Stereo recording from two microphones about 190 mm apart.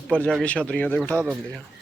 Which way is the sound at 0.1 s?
5° left (ahead or behind).